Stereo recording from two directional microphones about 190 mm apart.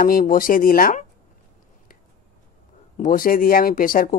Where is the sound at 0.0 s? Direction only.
50° left (ahead or behind).